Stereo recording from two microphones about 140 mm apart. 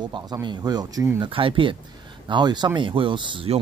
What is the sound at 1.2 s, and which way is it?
Speech, 40° right (ahead or behind).